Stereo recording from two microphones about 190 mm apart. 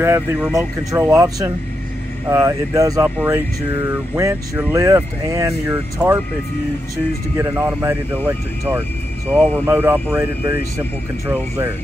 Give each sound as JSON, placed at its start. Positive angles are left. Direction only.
{"t": 0.0, "sound": "speech", "side_deg": -15}
{"t": 0.4, "sound": "speech", "side_deg": -5}
{"t": 0.9, "sound": "speech", "side_deg": -15}
{"t": 7.3, "sound": "speech", "side_deg": -10}
{"t": 11.2, "sound": "speech", "side_deg": -10}